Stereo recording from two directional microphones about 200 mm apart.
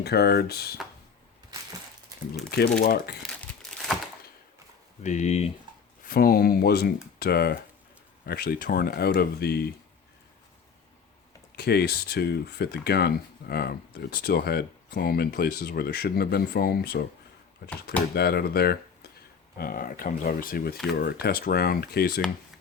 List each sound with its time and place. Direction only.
0.0 s speech: 55° left (ahead or behind)
2.8 s speech: 50° left (ahead or behind)
3.2 s crumpling: 5° left (ahead or behind)
5.0 s speech: 35° left (ahead or behind)
6.1 s speech: 45° left (ahead or behind)
11.5 s speech: 55° left (ahead or behind)